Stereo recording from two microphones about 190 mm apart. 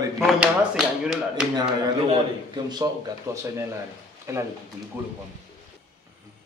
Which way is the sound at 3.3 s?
15° right (ahead or behind).